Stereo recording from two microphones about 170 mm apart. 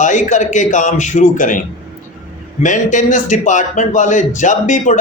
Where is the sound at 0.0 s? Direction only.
45° left (ahead or behind).